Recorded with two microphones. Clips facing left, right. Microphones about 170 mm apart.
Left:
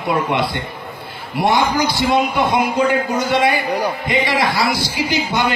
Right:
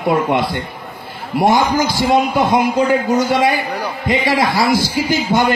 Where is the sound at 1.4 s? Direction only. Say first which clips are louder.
Right 2 dB; 45° right (ahead or behind).